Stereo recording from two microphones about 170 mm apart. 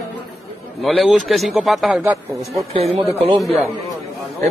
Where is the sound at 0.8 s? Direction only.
Centre (ahead or behind).